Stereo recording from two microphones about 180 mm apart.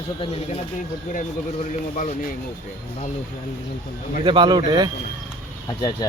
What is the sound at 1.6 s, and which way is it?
Speech, 40° left (ahead or behind).